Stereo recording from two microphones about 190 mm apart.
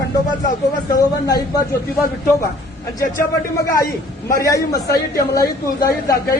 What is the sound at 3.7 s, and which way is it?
Speech, 15° left (ahead or behind).